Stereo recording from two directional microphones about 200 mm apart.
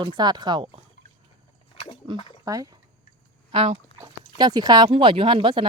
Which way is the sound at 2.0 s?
20° right (ahead or behind).